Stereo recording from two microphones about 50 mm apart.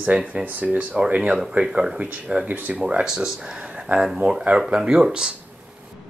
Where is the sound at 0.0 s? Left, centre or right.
Right.